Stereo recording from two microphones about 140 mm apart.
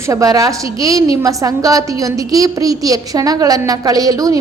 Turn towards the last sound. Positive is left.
turn(degrees=-25)  # may be behind; listen again after turning